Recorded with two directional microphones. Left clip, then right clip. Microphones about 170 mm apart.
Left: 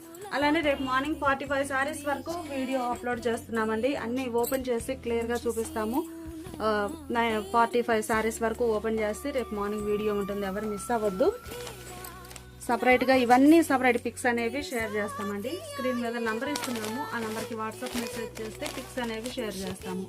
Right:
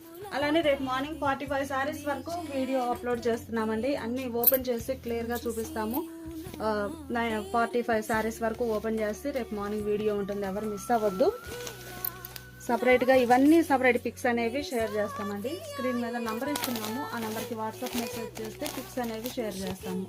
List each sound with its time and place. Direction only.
0.3 s a woman's voice: 50° left (ahead or behind)
2.3 s a child's voice: centre (ahead or behind)
2.7 s a woman's voice: 30° left (ahead or behind)
10.2 s a child's voice: 5° left (ahead or behind)
12.7 s a woman's voice: 30° left (ahead or behind)
14.2 s a child's voice: 5° left (ahead or behind)
19.5 s a child's voice: centre (ahead or behind)